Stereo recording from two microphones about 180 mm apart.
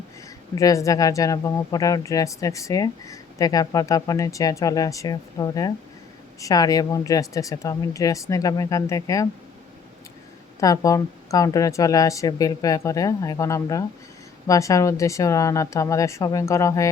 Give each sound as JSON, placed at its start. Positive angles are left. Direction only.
{"t": 0.5, "sound": "speech", "side_deg": 20}
{"t": 10.6, "sound": "speech", "side_deg": 20}